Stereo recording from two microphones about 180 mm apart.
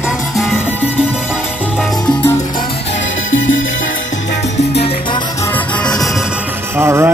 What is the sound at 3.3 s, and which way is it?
Music, 90° left.